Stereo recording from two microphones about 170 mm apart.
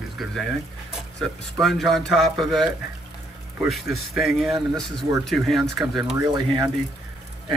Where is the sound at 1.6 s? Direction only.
Centre (ahead or behind).